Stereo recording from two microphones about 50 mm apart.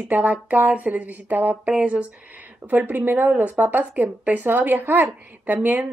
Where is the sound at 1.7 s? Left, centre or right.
Right.